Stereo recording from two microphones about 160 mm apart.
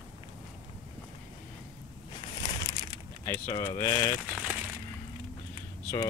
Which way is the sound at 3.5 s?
25° left (ahead or behind).